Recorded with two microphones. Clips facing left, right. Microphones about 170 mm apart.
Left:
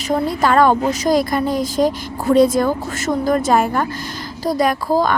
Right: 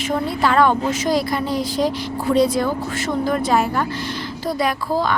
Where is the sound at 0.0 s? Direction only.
40° left (ahead or behind).